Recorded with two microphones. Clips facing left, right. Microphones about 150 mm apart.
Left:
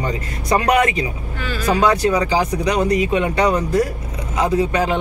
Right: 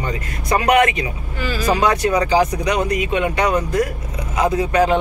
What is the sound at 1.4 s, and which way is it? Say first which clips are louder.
Speech: even; 10° right (ahead or behind).